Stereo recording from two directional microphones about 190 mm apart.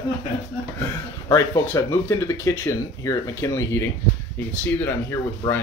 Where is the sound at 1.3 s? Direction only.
15° left (ahead or behind).